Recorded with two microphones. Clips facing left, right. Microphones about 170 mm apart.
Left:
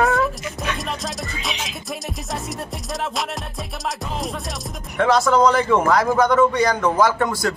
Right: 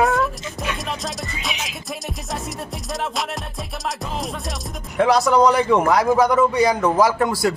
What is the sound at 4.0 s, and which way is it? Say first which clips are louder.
Music: even; centre (ahead or behind).